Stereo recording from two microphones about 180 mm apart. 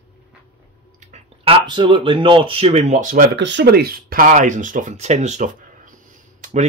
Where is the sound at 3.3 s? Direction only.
75° right (ahead or behind); by 6.7 s 45° right (ahead or behind).